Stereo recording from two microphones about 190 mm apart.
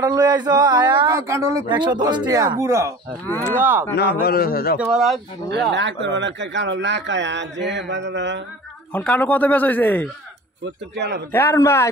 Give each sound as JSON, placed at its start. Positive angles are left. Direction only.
{"t": 0.0, "sound": "speech", "side_deg": -20}
{"t": 3.9, "sound": "a man's voice", "side_deg": 60}
{"t": 4.9, "sound": "speech", "side_deg": 0}
{"t": 5.5, "sound": "speech", "side_deg": -65}
{"t": 8.9, "sound": "speech", "side_deg": 5}
{"t": 10.6, "sound": "speech", "side_deg": -60}
{"t": 11.3, "sound": "speech", "side_deg": 15}